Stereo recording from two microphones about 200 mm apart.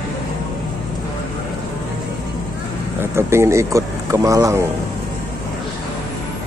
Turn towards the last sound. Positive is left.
turn(degrees=-15)  # may be behind; listen again after turning